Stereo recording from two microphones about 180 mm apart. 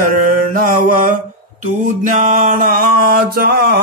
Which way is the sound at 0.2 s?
50° right (ahead or behind).